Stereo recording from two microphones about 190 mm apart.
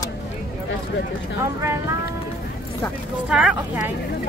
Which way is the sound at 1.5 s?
15° right (ahead or behind).